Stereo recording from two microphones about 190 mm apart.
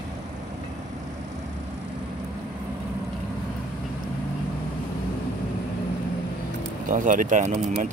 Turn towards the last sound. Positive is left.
turn(degrees=-40)  # may be behind; listen again after turning